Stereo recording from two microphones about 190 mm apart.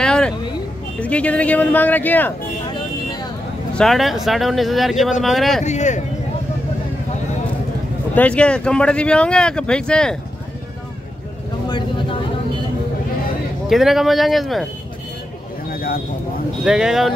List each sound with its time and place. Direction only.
0.0 s vehicle: 5° left (ahead or behind)
1.0 s speech: 5° left (ahead or behind)
3.7 s speech: centre (ahead or behind)
5.6 s speech: 40° left (ahead or behind)
8.1 s speech: 10° left (ahead or behind)
13.7 s speech: centre (ahead or behind)
15.7 s a sound: 50° left (ahead or behind)
16.6 s speech: 5° right (ahead or behind)